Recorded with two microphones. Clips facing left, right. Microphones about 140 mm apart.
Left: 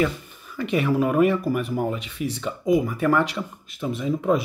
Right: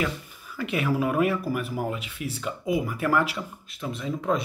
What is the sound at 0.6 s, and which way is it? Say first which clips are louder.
Speech: left 4 dB; 5° right (ahead or behind).